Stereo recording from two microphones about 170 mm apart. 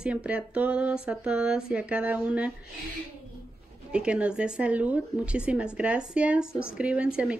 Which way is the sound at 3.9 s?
5° right (ahead or behind).